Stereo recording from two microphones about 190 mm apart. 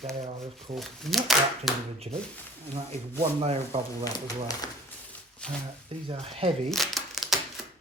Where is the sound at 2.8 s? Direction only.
30° right (ahead or behind).